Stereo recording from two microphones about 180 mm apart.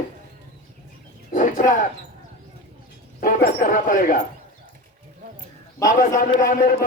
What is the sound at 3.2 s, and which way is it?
Speech, 50° left (ahead or behind).